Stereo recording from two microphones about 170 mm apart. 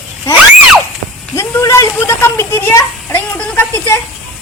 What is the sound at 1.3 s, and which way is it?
A child's voice, 15° left (ahead or behind).